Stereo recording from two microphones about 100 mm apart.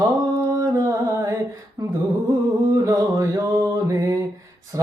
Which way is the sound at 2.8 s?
35° right (ahead or behind).